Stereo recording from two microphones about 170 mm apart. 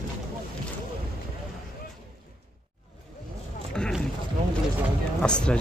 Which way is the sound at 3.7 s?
5° left (ahead or behind).